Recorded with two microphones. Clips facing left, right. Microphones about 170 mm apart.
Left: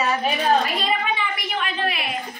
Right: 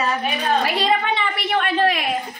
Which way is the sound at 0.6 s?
75° right (ahead or behind).